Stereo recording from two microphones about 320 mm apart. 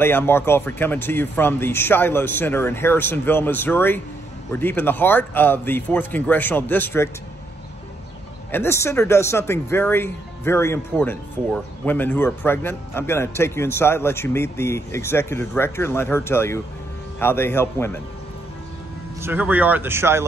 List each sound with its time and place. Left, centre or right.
0.0 s speech: centre
8.5 s speech: centre
19.2 s speech: centre